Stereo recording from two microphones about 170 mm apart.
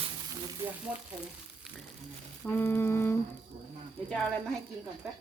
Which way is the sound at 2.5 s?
10° left (ahead or behind).